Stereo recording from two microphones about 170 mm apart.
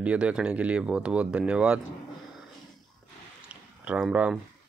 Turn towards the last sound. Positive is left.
turn(degrees=-5)  # may be behind; listen again after turning